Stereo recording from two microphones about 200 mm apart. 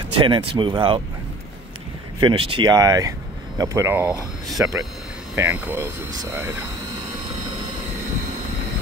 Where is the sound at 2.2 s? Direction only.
25° right (ahead or behind).